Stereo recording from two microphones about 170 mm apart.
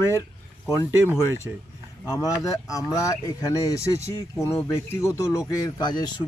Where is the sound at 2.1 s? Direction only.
20° left (ahead or behind).